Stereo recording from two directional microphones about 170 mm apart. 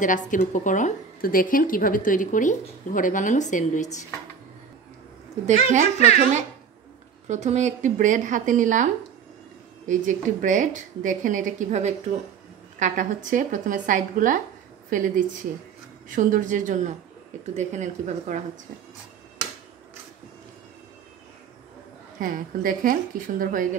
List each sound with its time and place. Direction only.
0.0 s speech: 50° left (ahead or behind)
5.5 s speech: 45° right (ahead or behind)
7.2 s speech: 45° right (ahead or behind)
22.2 s speech: 55° right (ahead or behind)